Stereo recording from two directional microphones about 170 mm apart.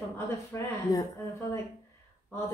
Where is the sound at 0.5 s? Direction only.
15° left (ahead or behind).